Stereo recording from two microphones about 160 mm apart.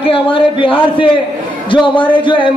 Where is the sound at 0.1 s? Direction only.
35° left (ahead or behind).